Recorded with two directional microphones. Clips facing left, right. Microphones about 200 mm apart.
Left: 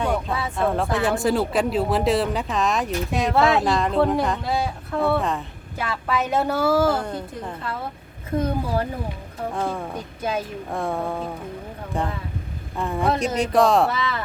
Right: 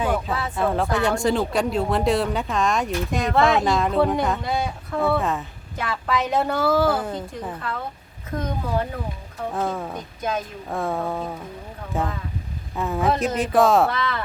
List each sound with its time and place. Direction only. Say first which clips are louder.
0.0 s speech: even; 5° right (ahead or behind)
8.3 s speech: left 5 dB; 30° left (ahead or behind)
9.5 s speech: right 1 dB; centre (ahead or behind)
9.9 s speech: left 1 dB; 10° left (ahead or behind)